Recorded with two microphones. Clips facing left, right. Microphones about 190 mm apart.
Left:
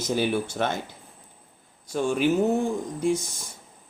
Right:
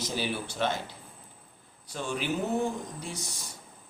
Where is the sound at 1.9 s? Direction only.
50° left (ahead or behind).